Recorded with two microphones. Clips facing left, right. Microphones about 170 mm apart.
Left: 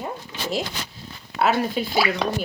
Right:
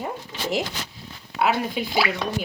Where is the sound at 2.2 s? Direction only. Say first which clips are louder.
Left 4 dB; 90° left.